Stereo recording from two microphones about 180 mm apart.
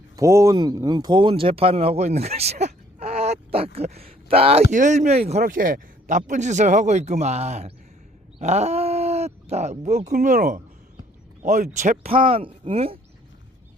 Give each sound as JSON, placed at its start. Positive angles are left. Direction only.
{"t": 0.2, "sound": "speech", "side_deg": -20}
{"t": 4.7, "sound": "a man's voice", "side_deg": -45}
{"t": 8.4, "sound": "a sound", "side_deg": -40}
{"t": 10.2, "sound": "speech", "side_deg": -50}
{"t": 12.1, "sound": "a man's voice", "side_deg": -30}